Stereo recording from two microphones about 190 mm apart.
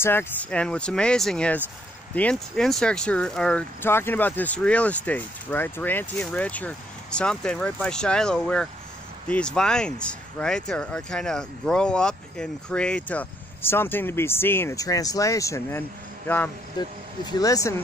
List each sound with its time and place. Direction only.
0.0 s speech: 10° left (ahead or behind)